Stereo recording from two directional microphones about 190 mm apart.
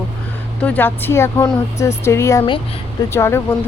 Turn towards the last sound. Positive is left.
turn(degrees=15)  # may be behind; listen again after turning